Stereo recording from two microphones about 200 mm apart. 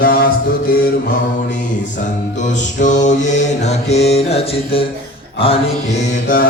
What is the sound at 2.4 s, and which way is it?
Mantra, 40° left (ahead or behind).